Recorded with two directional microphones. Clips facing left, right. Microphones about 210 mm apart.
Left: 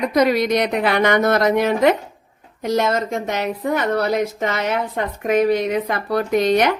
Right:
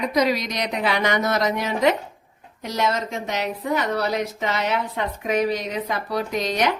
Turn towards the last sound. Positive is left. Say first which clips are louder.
# left 7 dB
turn(degrees=55)  # may be behind; listen again after turning